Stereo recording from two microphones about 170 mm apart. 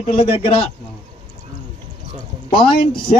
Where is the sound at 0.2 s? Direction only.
35° left (ahead or behind).